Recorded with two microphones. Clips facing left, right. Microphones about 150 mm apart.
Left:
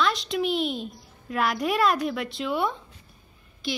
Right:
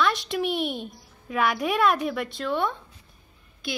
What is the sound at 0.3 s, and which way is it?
Speech, centre (ahead or behind).